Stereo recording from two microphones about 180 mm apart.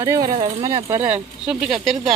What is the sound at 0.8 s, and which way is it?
Speech, 10° right (ahead or behind).